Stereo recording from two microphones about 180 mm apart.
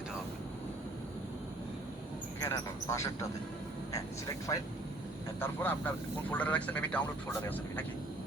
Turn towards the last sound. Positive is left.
turn(degrees=10)  # may be behind; listen again after turning